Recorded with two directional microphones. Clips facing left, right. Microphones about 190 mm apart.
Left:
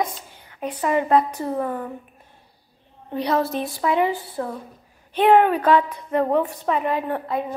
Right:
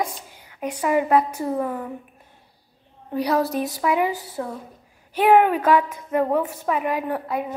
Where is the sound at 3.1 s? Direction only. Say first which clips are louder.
Right 1 dB; 10° right (ahead or behind).